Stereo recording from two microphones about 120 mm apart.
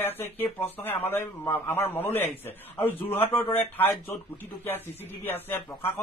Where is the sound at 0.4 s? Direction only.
15° left (ahead or behind).